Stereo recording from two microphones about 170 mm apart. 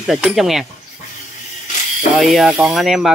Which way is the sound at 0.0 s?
5° right (ahead or behind).